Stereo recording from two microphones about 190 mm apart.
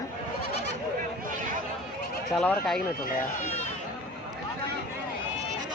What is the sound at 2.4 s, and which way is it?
Speech, centre (ahead or behind).